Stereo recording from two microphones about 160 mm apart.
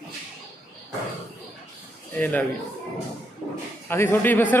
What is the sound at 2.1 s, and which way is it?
Speech, 10° left (ahead or behind).